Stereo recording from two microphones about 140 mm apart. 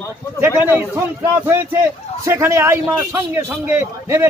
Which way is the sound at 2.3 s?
15° right (ahead or behind).